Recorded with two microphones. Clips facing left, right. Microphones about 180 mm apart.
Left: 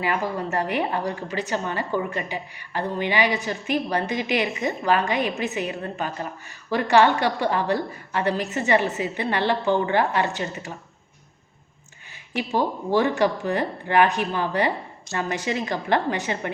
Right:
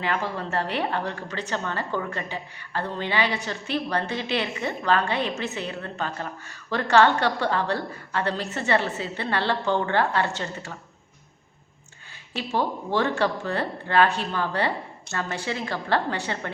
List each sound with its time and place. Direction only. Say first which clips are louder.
0.0 s a woman's voice: left 3 dB; 10° left (ahead or behind)
12.3 s a woman's voice: left 2 dB; 15° left (ahead or behind)